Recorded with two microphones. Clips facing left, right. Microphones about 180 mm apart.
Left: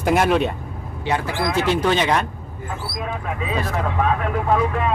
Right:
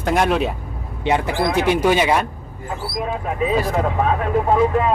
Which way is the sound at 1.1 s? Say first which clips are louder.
Right 3 dB; 20° right (ahead or behind).